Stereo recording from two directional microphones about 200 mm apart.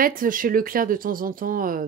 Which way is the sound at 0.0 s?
45° right (ahead or behind).